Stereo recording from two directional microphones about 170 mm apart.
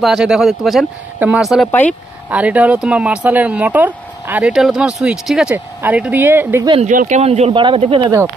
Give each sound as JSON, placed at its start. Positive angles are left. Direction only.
{"t": 0.0, "sound": "speech", "side_deg": 0}
{"t": 1.7, "sound": "speech", "side_deg": 10}
{"t": 2.2, "sound": "speech", "side_deg": -10}
{"t": 6.9, "sound": "speech", "side_deg": -50}